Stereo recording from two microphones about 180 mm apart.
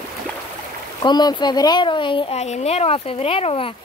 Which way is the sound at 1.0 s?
25° left (ahead or behind).